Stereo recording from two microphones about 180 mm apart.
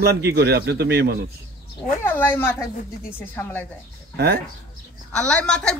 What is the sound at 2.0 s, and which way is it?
Speech, 10° left (ahead or behind).